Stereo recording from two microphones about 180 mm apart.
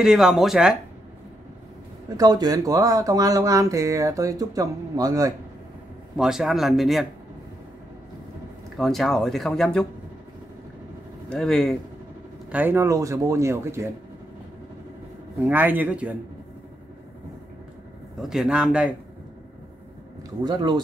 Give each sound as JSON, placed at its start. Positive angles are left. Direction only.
{"t": 0.0, "sound": "speech", "side_deg": 0}
{"t": 2.0, "sound": "speech", "side_deg": -20}
{"t": 6.1, "sound": "speech", "side_deg": -5}
{"t": 8.7, "sound": "speech", "side_deg": 0}
{"t": 11.2, "sound": "speech", "side_deg": 5}
{"t": 12.4, "sound": "speech", "side_deg": -10}
{"t": 15.3, "sound": "speech", "side_deg": -10}
{"t": 18.3, "sound": "speech", "side_deg": -5}
{"t": 20.2, "sound": "speech", "side_deg": -25}